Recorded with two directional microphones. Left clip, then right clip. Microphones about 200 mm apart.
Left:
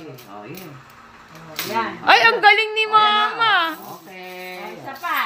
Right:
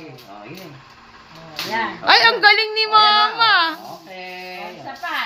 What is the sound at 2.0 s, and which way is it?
A woman's voice, centre (ahead or behind).